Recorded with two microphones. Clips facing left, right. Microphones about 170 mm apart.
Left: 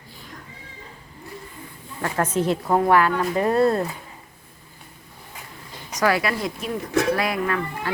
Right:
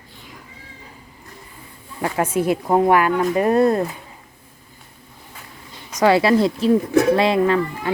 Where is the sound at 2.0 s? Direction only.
10° right (ahead or behind).